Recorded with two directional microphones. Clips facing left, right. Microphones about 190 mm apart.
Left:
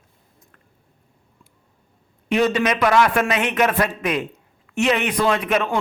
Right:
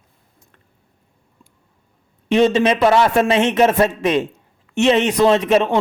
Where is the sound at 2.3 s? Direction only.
25° right (ahead or behind).